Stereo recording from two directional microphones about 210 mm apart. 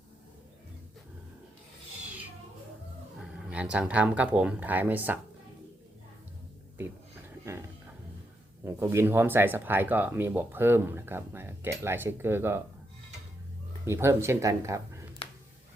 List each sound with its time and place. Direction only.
3.2 s speech: 5° right (ahead or behind)
8.6 s speech: 10° right (ahead or behind)
13.8 s speech: 15° right (ahead or behind)
15.2 s a sound: 25° left (ahead or behind)